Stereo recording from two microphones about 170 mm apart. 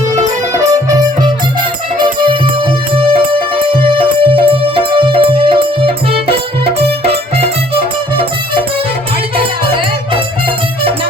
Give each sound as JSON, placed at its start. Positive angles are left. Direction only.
{"t": 0.5, "sound": "music", "side_deg": -20}
{"t": 9.4, "sound": "music", "side_deg": -30}